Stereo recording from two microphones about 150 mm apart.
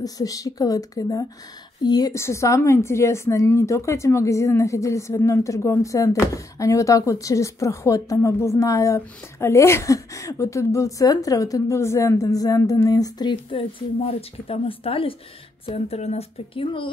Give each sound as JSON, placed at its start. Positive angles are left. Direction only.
{"t": 0.0, "sound": "a woman's voice", "side_deg": 25}